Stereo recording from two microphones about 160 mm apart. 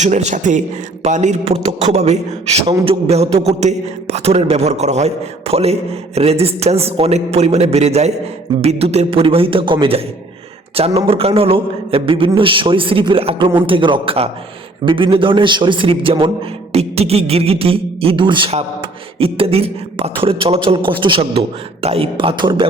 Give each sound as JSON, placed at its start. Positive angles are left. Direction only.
{"t": 0.0, "sound": "a man's voice", "side_deg": -45}